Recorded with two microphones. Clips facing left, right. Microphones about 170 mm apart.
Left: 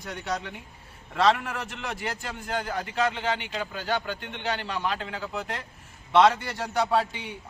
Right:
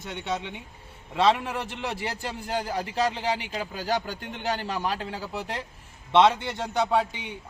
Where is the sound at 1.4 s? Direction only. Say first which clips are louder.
Right 3 dB; 30° right (ahead or behind).